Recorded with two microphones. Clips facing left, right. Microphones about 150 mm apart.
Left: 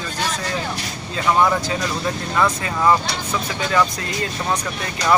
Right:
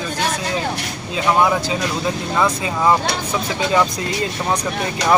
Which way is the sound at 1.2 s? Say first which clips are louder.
Right 1 dB; 10° right (ahead or behind).